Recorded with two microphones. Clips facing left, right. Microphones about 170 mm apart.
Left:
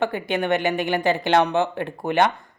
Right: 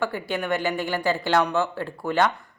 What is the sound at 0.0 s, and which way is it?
Speech, 20° left (ahead or behind).